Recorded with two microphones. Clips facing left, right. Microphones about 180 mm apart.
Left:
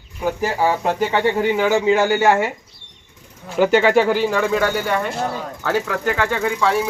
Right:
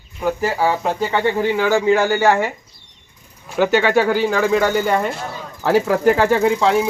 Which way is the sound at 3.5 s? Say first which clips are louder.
Left 1 dB; 5° left (ahead or behind).